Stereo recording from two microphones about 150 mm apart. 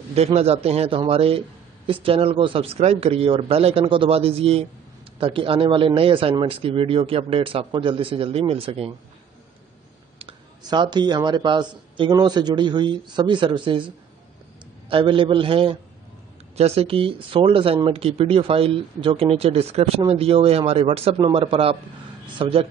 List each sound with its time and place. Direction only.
0.1 s a man's voice: 45° right (ahead or behind)
10.1 s speech: 35° right (ahead or behind)
14.9 s speech: 35° right (ahead or behind)